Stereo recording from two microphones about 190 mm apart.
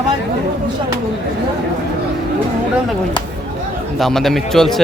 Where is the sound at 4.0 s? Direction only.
Centre (ahead or behind).